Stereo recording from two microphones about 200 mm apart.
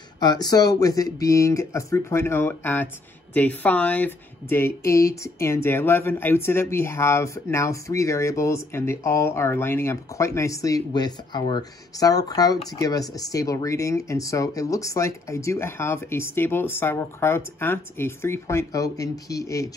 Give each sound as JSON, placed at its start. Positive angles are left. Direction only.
{"t": 0.2, "sound": "speech", "side_deg": 20}